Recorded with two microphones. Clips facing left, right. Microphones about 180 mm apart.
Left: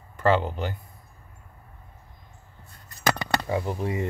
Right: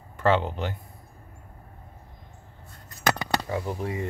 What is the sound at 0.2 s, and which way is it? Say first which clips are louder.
Speech: left 1 dB; centre (ahead or behind).